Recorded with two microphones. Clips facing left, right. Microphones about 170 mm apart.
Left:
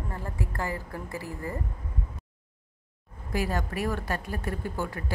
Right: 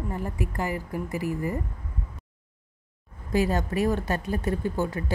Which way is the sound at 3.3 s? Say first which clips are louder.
Right 5 dB; 25° right (ahead or behind).